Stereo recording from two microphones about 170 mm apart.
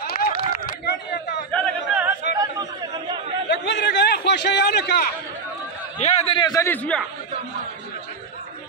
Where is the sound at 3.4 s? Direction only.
85° left; by 5.1 s 70° left (ahead or behind).